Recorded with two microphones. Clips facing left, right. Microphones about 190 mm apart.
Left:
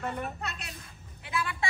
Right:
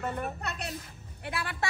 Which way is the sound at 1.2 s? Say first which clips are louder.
Left 2 dB; 60° right (ahead or behind).